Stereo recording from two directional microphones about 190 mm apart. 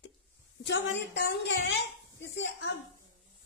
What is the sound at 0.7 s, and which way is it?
A woman's voice, 65° left (ahead or behind).